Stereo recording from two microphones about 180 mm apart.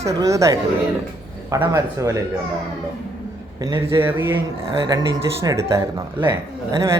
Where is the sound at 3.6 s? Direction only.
20° right (ahead or behind).